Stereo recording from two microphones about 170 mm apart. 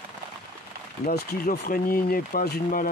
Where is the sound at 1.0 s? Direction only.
60° left (ahead or behind).